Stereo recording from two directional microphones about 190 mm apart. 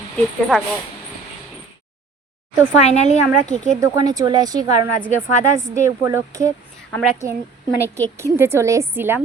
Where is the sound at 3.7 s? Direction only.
15° right (ahead or behind).